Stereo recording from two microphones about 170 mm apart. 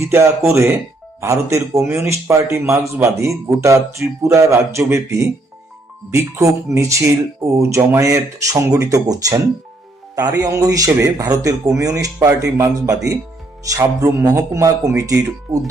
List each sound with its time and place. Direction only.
0.0 s speech: 15° right (ahead or behind)